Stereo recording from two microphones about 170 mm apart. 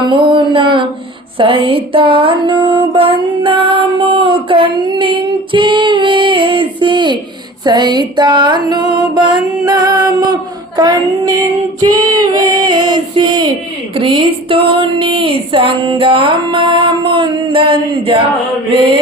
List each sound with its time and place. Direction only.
0.1 s female singing: 30° right (ahead or behind)
1.4 s music: 30° right (ahead or behind)
7.6 s female singing: 25° right (ahead or behind)
13.9 s speech: 30° right (ahead or behind)